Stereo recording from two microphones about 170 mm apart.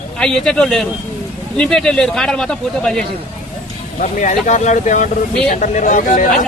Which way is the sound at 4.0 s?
45° left (ahead or behind).